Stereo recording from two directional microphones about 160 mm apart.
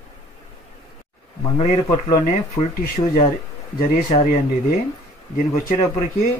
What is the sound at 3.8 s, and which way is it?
Speech, 60° left (ahead or behind).